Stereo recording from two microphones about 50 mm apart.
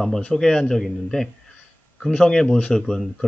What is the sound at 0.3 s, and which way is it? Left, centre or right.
Speech, centre.